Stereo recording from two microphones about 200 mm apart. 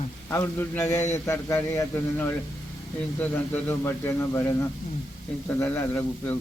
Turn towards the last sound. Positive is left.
turn(degrees=10)  # may be behind; listen again after turning